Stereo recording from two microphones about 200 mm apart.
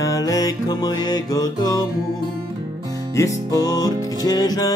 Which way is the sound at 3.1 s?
15° left (ahead or behind).